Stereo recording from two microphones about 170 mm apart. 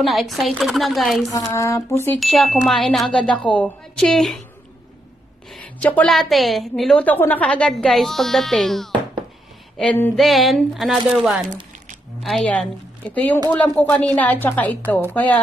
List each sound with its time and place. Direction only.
0.0 s a woman's voice: centre (ahead or behind)
1.3 s speech: 15° left (ahead or behind)
2.1 s a woman's voice: centre (ahead or behind)
5.5 s a woman's voice: 10° left (ahead or behind)